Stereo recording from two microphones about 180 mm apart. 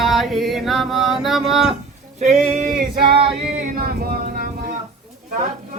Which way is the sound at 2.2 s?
55° right (ahead or behind).